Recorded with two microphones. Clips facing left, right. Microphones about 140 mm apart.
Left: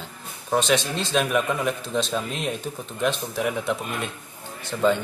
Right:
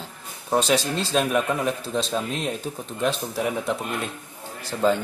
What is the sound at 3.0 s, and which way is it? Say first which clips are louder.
Speech: even; centre (ahead or behind).